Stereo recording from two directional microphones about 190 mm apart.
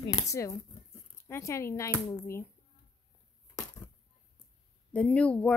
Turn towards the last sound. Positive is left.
turn(degrees=5)  # may be behind; listen again after turning